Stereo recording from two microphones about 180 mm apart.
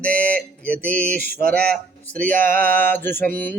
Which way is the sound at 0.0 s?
5° left (ahead or behind).